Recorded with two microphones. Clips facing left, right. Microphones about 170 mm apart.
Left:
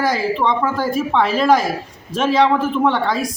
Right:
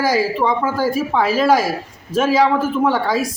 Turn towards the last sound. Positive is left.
turn(degrees=-5)  # may be behind; listen again after turning